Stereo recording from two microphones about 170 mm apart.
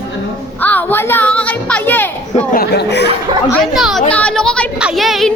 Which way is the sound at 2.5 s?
70° left (ahead or behind).